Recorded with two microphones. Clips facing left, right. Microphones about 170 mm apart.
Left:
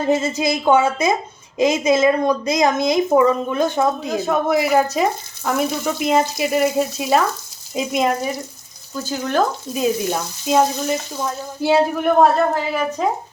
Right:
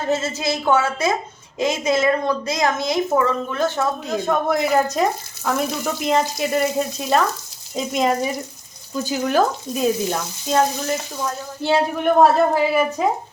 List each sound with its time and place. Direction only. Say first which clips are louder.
0.1 s a woman's voice: left 3 dB; 15° left (ahead or behind)
4.2 s frying: left 2 dB; 5° left (ahead or behind)
9.0 s frying: right 1 dB; 10° right (ahead or behind); by 11.8 s 10° left (ahead or behind)
12.2 s frying: right 3 dB; 5° right (ahead or behind)